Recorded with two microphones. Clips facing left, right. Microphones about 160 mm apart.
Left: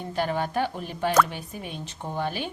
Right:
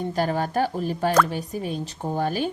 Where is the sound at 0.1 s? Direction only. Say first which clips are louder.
Even; 40° right (ahead or behind).